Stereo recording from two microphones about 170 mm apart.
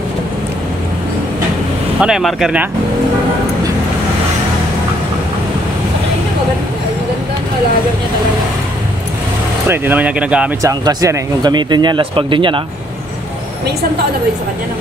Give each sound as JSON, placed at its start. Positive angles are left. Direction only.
{"t": 2.0, "sound": "speech", "side_deg": -5}
{"t": 9.7, "sound": "speech", "side_deg": -10}
{"t": 10.6, "sound": "speech", "side_deg": -20}